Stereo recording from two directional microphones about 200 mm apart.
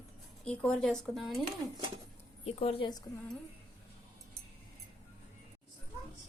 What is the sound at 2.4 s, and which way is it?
Speech, 30° left (ahead or behind).